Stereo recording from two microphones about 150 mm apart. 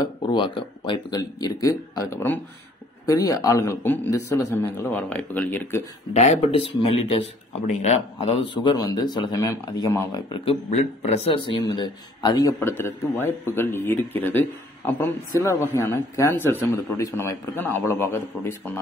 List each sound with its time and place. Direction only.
0.0 s speech: 30° left (ahead or behind); by 5.9 s 15° left (ahead or behind)
6.1 s speech: 45° left (ahead or behind); by 10.4 s 25° left (ahead or behind)
10.4 s a man's voice: 40° left (ahead or behind)
11.5 s speech: 30° left (ahead or behind)